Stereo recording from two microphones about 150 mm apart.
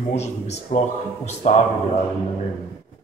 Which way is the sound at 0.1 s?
45° left (ahead or behind).